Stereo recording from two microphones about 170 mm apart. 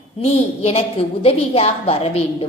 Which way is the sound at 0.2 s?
35° left (ahead or behind).